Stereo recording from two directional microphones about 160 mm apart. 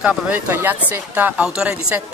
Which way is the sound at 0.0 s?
10° right (ahead or behind).